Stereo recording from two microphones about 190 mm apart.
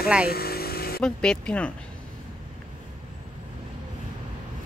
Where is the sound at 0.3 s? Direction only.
55° left (ahead or behind).